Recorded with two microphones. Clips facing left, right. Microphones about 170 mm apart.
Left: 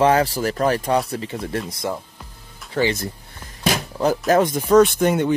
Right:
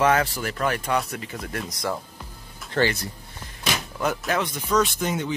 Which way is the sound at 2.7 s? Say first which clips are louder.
Left 2 dB; 5° left (ahead or behind).